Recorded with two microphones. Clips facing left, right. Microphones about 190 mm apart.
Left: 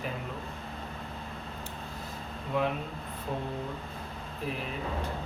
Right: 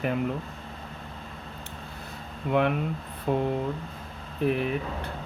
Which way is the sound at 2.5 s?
65° right (ahead or behind).